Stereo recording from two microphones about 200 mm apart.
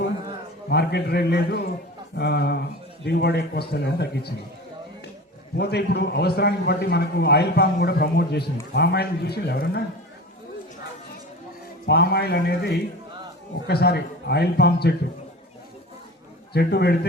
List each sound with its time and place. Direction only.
0.7 s a man's voice: 55° left (ahead or behind)
5.5 s a man's voice: 55° left (ahead or behind)
11.9 s a man's voice: 55° left (ahead or behind)
16.5 s a man's voice: 55° left (ahead or behind)